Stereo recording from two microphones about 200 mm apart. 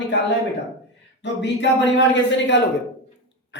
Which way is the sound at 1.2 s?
60° left (ahead or behind).